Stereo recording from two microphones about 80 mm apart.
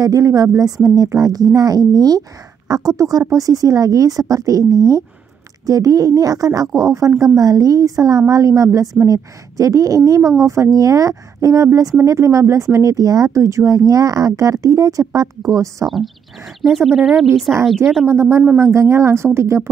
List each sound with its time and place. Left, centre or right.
0.0 s speech: right
15.9 s speech: centre
17.5 s a woman's voice: right
18.0 s speech: right